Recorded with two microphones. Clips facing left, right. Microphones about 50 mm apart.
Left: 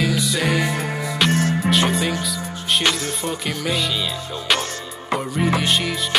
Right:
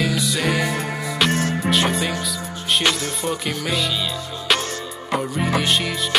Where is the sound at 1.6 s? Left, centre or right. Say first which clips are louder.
Left 1 dB; centre.